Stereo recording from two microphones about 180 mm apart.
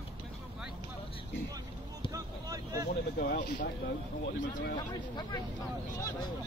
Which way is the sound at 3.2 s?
60° left (ahead or behind).